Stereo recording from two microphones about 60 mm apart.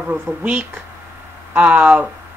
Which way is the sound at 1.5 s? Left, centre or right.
Right.